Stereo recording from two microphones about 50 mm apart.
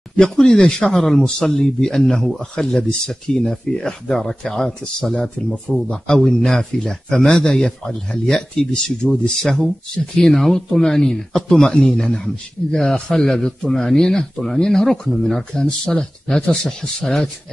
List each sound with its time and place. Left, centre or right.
0.1 s speech: centre
12.6 s speech: centre
12.9 s speech: centre